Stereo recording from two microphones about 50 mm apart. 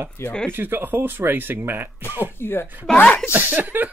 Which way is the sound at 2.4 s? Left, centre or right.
Left.